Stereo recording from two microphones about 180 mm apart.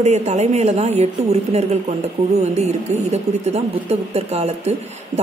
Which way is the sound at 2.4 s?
40° right (ahead or behind).